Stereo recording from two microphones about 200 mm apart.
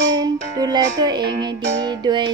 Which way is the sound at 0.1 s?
20° right (ahead or behind).